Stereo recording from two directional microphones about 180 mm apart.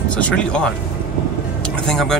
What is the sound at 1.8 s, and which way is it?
Speech, 5° left (ahead or behind).